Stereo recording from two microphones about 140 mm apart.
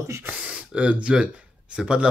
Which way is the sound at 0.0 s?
15° right (ahead or behind).